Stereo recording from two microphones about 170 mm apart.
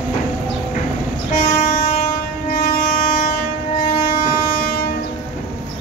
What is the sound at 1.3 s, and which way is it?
Train, 45° left (ahead or behind).